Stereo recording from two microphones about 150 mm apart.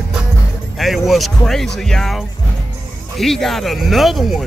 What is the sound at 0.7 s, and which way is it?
Speech, centre (ahead or behind).